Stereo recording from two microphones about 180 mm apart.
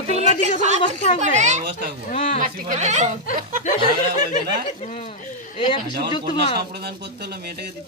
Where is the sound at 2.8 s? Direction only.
40° right (ahead or behind).